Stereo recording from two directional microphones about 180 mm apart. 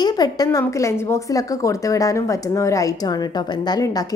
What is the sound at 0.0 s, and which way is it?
A woman's voice, 20° left (ahead or behind).